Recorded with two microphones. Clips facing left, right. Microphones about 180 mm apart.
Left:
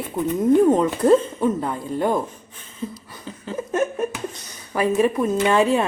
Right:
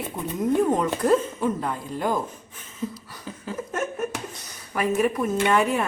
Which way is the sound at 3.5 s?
25° left (ahead or behind).